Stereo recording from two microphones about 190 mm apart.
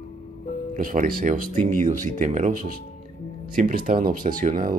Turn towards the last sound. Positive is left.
turn(degrees=-45)  # may be behind; listen again after turning